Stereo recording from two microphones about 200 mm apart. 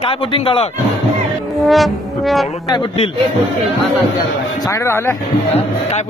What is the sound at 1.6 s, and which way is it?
Brass instrument, centre (ahead or behind).